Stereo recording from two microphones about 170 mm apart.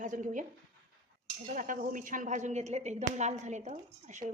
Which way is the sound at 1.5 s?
50° right (ahead or behind).